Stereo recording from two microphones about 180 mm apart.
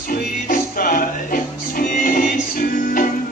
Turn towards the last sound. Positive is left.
turn(degrees=50)  # may be behind; listen again after turning